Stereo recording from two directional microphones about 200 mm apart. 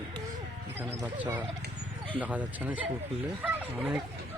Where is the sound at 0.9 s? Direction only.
10° right (ahead or behind).